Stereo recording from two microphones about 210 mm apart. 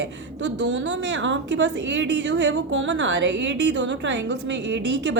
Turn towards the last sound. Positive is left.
turn(degrees=-55)  # may be behind; listen again after turning